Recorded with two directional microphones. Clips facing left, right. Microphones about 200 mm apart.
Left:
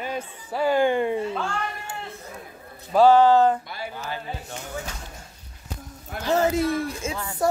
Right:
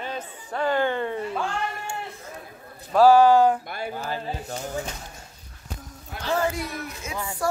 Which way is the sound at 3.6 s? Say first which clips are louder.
Right 3 dB; 50° right (ahead or behind).